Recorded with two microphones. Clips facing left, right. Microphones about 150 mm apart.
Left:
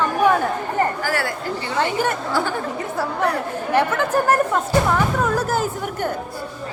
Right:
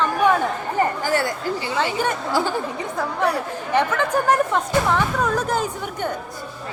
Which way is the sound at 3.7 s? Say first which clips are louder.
Left 1 dB; 10° left (ahead or behind).